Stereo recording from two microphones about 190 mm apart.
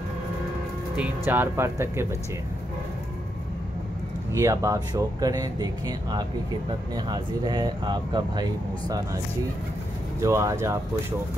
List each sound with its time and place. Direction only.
0.9 s speech: 10° right (ahead or behind)
4.4 s speech: 15° right (ahead or behind)
10.2 s speech: 15° right (ahead or behind)